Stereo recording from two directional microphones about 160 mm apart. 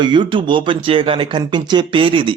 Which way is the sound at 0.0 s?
30° right (ahead or behind).